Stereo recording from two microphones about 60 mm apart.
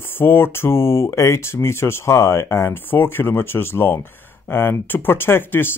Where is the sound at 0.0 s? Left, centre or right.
Left.